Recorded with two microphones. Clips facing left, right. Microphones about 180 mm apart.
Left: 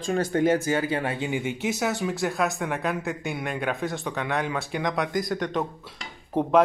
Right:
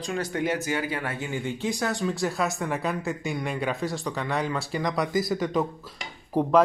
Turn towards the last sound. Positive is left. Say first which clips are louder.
# even
turn(degrees=0)  # may be behind; listen again after turning